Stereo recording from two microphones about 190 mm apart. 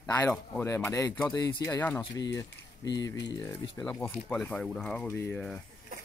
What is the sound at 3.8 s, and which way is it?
Speech, 5° left (ahead or behind).